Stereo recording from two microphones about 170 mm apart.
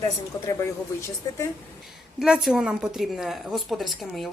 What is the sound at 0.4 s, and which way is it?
Speech, 15° left (ahead or behind).